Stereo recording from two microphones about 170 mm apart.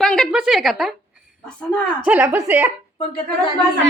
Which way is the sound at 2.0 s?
10° right (ahead or behind).